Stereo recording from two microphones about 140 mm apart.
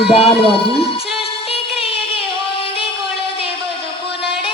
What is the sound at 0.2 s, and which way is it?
Speech, 40° left (ahead or behind).